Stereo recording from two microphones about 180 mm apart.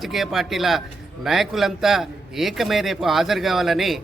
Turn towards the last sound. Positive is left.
turn(degrees=0)  # may be behind; listen again after turning